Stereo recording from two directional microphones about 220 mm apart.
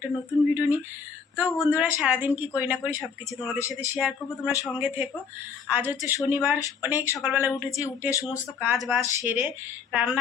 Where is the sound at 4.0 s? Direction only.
5° right (ahead or behind).